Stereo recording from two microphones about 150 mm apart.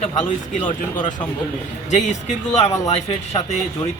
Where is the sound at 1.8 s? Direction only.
50° left (ahead or behind).